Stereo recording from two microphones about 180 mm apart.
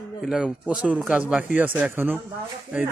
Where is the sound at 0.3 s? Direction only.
5° right (ahead or behind).